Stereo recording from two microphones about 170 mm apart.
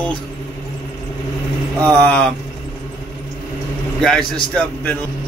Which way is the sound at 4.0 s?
5° left (ahead or behind).